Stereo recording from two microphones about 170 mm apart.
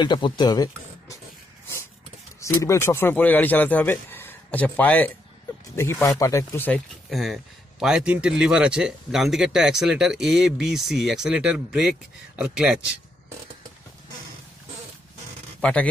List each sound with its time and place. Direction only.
0.0 s speech: 25° left (ahead or behind)
2.4 s a man's voice: 20° left (ahead or behind)
7.1 s speech: centre (ahead or behind)
15.6 s speech: 10° left (ahead or behind)